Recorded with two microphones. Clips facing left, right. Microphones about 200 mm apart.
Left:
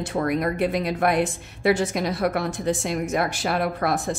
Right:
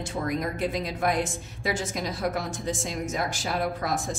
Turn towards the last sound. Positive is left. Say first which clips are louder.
# left 4 dB
turn(degrees=65)  # may be behind; listen again after turning